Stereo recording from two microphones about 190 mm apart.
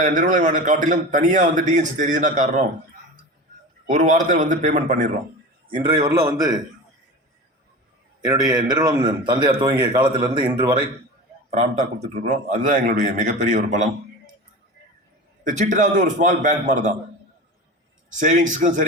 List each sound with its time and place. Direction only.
0.0 s a man's voice: 40° right (ahead or behind)
3.8 s a man's voice: 40° right (ahead or behind)
5.7 s speech: 25° right (ahead or behind)
8.7 s speech: 20° right (ahead or behind)
11.5 s a man's voice: 40° right (ahead or behind)
15.4 s a man's voice: 45° right (ahead or behind)
18.1 s a man's voice: 40° right (ahead or behind)